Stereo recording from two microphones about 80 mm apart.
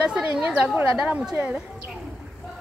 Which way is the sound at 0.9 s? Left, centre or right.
Centre.